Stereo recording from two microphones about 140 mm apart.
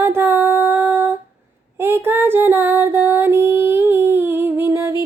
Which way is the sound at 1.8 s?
15° right (ahead or behind).